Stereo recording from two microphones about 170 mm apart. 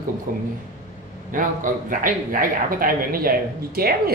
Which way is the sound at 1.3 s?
50° right (ahead or behind).